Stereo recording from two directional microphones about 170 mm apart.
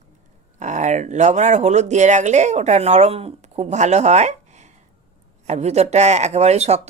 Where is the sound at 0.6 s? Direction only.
45° right (ahead or behind).